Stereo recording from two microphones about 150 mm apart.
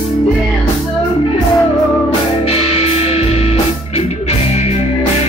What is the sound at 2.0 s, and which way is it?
Music, 40° left (ahead or behind).